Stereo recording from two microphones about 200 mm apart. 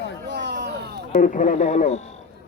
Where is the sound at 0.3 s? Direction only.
60° right (ahead or behind).